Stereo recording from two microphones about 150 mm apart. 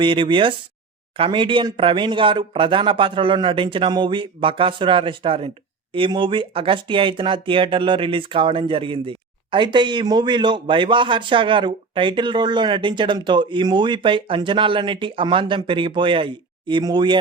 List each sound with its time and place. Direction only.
0.0 s speech: 35° right (ahead or behind)